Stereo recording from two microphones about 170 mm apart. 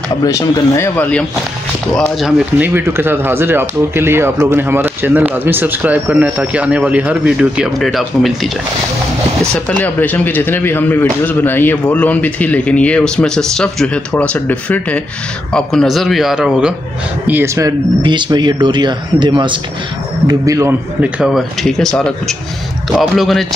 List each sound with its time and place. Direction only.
0.2 s speech: 20° left (ahead or behind); by 8.5 s centre (ahead or behind)
9.5 s a man's voice: 10° left (ahead or behind)
17.3 s speech: 15° right (ahead or behind)
21.0 s a man's voice: 5° right (ahead or behind)